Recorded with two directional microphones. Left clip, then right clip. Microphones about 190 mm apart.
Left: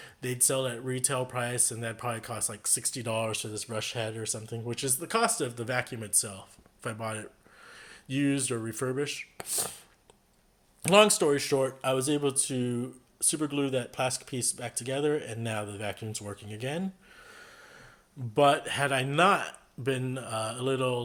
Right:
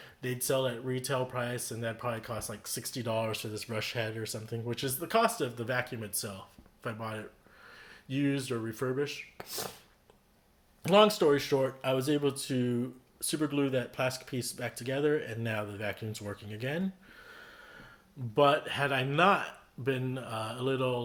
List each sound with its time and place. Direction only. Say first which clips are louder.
0.0 s speech: left 4 dB; 35° left (ahead or behind)
10.8 s speech: left 2 dB; 40° left (ahead or behind)